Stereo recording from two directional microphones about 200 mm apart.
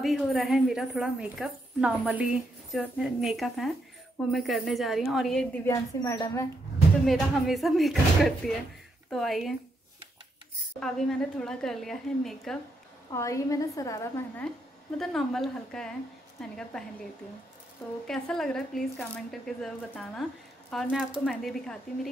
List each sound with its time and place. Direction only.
0.0 s a woman's voice: centre (ahead or behind)
5.7 s a woman's voice: 15° left (ahead or behind)
7.1 s a woman's voice: centre (ahead or behind)
10.8 s a woman's voice: 5° left (ahead or behind)
13.1 s a woman's voice: 15° left (ahead or behind)
18.0 s a woman's voice: centre (ahead or behind)